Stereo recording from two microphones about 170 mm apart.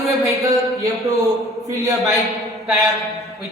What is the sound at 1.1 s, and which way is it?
A man's voice, 20° right (ahead or behind).